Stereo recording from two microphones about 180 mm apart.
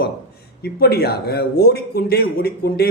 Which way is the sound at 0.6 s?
60° left (ahead or behind).